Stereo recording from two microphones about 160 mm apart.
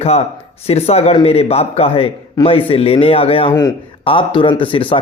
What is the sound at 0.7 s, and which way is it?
Speech, 40° left (ahead or behind).